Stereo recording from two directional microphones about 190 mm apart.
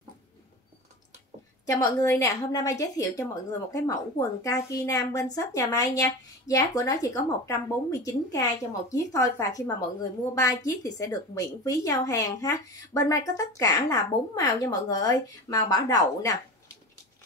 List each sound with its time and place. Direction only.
1.7 s a woman's voice: 15° left (ahead or behind)
4.4 s a woman's voice: 15° left (ahead or behind)